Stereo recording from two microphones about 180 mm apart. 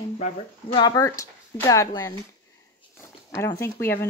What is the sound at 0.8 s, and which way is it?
Speech, 25° left (ahead or behind).